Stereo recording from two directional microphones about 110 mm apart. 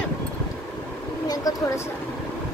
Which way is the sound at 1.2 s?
35° left (ahead or behind).